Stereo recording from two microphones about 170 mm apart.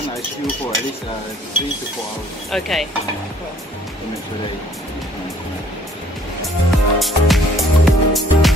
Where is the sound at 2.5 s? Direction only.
Centre (ahead or behind).